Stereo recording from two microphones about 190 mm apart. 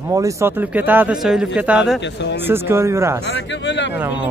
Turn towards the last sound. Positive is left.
turn(degrees=70)  # may be behind; listen again after turning